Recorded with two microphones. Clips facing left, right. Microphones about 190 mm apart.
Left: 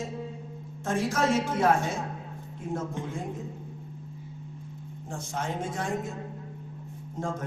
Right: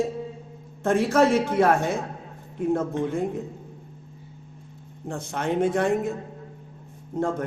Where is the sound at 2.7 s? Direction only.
60° right (ahead or behind).